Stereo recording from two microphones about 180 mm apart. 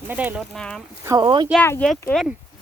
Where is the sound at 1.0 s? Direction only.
20° right (ahead or behind).